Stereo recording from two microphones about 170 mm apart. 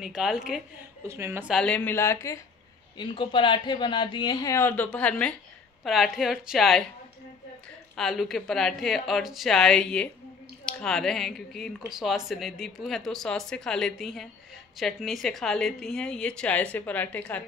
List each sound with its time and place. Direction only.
0.0 s speech: centre (ahead or behind)
1.0 s speech: 15° right (ahead or behind)
1.5 s speech: 5° left (ahead or behind)
3.0 s a man's voice: 30° left (ahead or behind); by 6.8 s centre (ahead or behind)
7.9 s speech: centre (ahead or behind)